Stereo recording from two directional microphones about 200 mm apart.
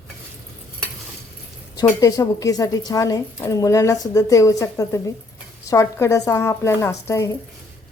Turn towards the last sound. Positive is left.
turn(degrees=15)  # may be behind; listen again after turning